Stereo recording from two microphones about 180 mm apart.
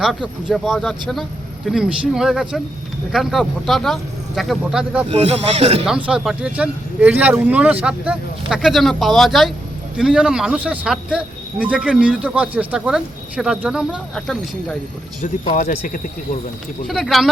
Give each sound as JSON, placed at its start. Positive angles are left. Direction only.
{"t": 0.0, "sound": "speech", "side_deg": -5}
{"t": 5.0, "sound": "speech", "side_deg": -35}
{"t": 6.1, "sound": "speech", "side_deg": -5}
{"t": 15.2, "sound": "speech", "side_deg": 45}
{"t": 16.8, "sound": "speech", "side_deg": 0}